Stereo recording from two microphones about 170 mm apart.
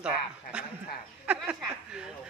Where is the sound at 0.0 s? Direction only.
5° right (ahead or behind).